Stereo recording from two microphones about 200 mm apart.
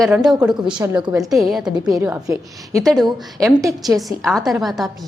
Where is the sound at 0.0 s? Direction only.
Centre (ahead or behind).